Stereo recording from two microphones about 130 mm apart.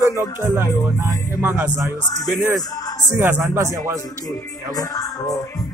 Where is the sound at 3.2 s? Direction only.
15° right (ahead or behind).